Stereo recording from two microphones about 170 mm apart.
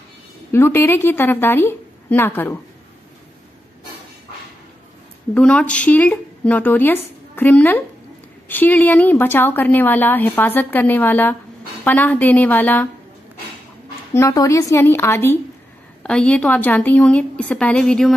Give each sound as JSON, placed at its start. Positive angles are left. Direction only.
{"t": 0.5, "sound": "a woman's voice", "side_deg": 15}
{"t": 5.3, "sound": "a woman's voice", "side_deg": 5}
{"t": 14.1, "sound": "a woman's voice", "side_deg": 20}